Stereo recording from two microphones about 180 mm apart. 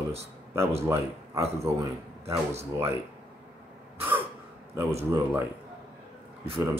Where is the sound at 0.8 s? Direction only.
15° right (ahead or behind).